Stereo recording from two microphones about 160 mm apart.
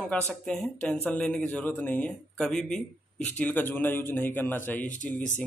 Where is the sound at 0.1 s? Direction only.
5° left (ahead or behind).